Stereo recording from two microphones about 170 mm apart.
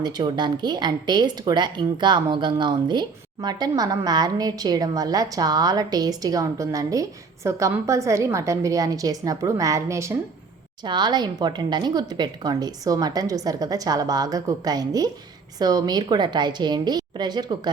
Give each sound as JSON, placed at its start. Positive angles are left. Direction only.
{"t": 0.0, "sound": "speech", "side_deg": -25}